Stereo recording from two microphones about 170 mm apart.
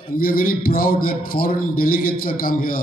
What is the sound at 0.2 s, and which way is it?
A man's voice, 55° left (ahead or behind).